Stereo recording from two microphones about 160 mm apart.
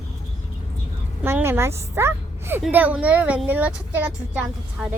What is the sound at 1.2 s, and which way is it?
A woman's voice, 15° right (ahead or behind).